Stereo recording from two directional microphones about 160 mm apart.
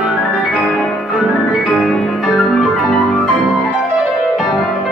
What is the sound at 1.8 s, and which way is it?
Music, centre (ahead or behind).